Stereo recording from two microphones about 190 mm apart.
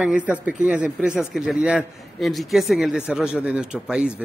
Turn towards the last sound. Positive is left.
turn(degrees=-5)  # may be behind; listen again after turning